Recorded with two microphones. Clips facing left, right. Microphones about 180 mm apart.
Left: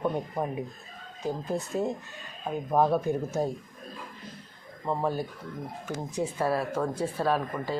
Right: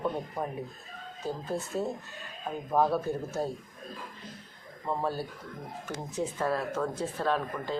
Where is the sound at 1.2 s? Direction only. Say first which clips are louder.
Left 3 dB; 15° left (ahead or behind).